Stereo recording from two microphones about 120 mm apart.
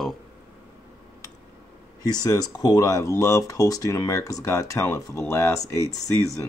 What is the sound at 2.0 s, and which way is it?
Speech, 30° left (ahead or behind).